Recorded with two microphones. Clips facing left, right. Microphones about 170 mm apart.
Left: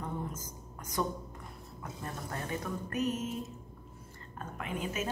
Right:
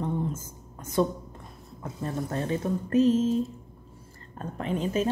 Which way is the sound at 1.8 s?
25° right (ahead or behind).